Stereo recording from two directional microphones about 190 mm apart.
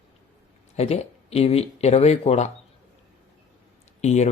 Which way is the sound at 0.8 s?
35° left (ahead or behind).